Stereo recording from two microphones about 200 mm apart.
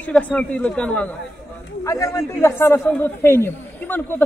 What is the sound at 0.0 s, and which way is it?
A man's voice, 5° left (ahead or behind).